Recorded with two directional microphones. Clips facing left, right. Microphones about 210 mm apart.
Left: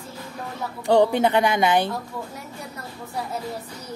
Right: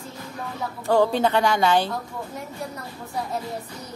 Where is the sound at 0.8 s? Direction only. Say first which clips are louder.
Left 2 dB; 20° left (ahead or behind).